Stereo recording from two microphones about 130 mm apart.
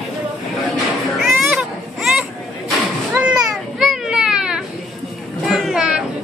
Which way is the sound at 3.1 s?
5° right (ahead or behind).